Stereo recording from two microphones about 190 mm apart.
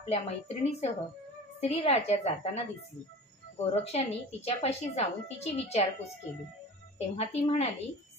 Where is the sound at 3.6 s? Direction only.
35° left (ahead or behind).